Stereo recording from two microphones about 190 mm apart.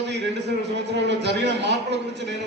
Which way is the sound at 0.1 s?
65° right (ahead or behind).